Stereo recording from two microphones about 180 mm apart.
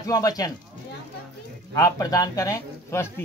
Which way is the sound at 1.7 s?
20° left (ahead or behind).